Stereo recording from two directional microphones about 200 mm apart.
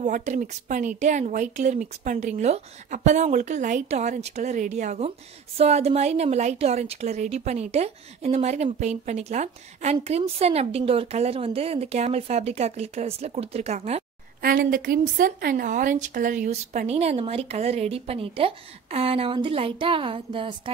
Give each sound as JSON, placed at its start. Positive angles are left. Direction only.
{"t": 0.0, "sound": "speech", "side_deg": -35}
{"t": 14.4, "sound": "speech", "side_deg": -45}